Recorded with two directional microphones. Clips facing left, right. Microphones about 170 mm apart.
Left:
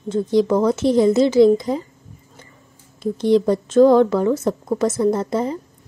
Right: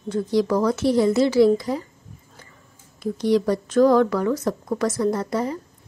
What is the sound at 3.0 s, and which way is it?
A woman's voice, 25° left (ahead or behind).